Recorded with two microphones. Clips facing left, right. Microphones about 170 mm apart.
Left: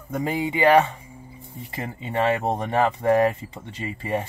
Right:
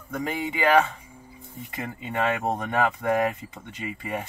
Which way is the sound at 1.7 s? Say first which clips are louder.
Left 2 dB; 30° left (ahead or behind).